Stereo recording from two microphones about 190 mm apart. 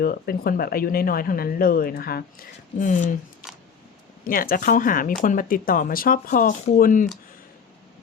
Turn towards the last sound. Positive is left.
turn(degrees=45)  # may be behind; listen again after turning